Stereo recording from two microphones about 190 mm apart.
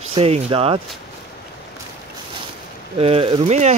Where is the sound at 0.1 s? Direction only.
30° right (ahead or behind).